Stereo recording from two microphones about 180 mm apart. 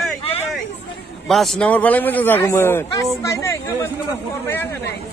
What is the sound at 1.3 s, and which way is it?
Speech, centre (ahead or behind).